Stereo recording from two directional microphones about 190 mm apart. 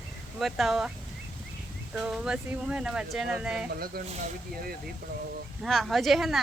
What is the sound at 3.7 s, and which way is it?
Speech, 55° right (ahead or behind).